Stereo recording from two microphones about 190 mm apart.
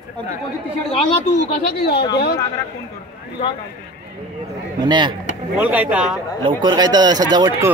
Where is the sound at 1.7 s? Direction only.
55° left (ahead or behind).